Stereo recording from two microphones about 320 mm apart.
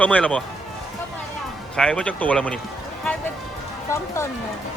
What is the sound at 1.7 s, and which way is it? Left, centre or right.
Speech, centre.